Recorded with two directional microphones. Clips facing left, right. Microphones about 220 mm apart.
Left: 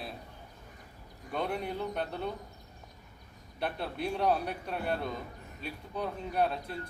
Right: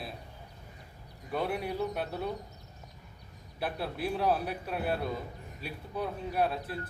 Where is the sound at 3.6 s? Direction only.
5° right (ahead or behind).